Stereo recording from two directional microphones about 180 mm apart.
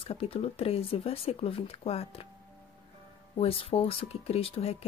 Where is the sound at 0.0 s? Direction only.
30° left (ahead or behind).